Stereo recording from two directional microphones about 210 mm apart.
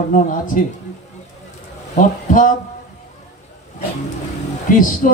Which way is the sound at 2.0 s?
40° left (ahead or behind).